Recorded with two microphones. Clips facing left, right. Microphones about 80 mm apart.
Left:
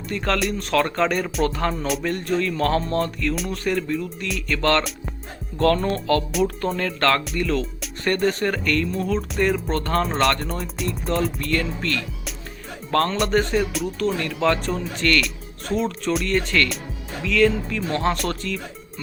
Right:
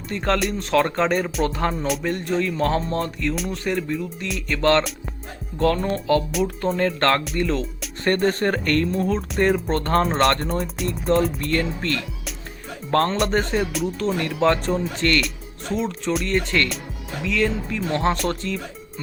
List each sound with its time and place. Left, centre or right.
0.1 s speech: right
6.7 s speech: right
10.8 s speech: centre
11.1 s speech: right